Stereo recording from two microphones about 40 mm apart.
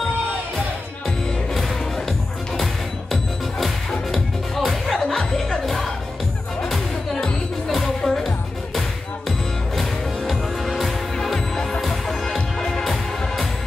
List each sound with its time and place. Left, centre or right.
2.5 s music: centre
7.6 s music: centre
9.8 s music: centre
11.3 s music: centre